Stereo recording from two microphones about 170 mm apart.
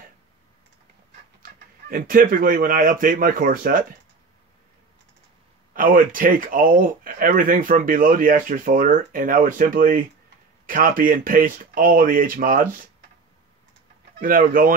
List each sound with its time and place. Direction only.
1.4 s speech: 55° right (ahead or behind)
5.7 s speech: 55° right (ahead or behind)
14.2 s speech: 55° right (ahead or behind)